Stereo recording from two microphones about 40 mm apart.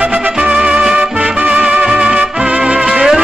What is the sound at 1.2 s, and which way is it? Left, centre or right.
Music, right.